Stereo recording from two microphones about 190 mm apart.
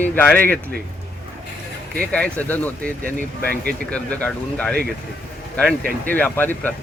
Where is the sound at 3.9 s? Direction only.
5° left (ahead or behind).